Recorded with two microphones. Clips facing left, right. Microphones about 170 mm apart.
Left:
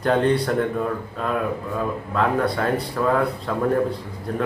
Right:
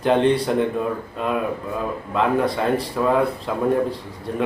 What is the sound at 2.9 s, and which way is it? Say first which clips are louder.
Speech: right 1 dB; 15° right (ahead or behind).